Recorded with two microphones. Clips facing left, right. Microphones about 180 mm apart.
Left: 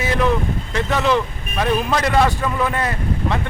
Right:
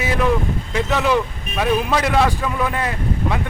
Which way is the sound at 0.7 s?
5° right (ahead or behind).